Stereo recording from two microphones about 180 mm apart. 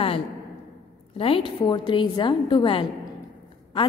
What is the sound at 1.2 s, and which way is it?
A woman's voice, 30° left (ahead or behind).